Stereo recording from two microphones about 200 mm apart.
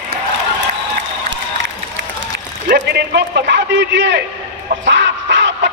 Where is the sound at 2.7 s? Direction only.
55° right (ahead or behind).